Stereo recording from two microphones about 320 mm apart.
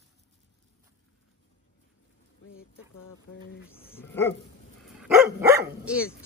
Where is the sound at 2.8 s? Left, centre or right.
Left.